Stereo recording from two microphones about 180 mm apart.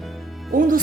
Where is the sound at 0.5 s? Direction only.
50° right (ahead or behind).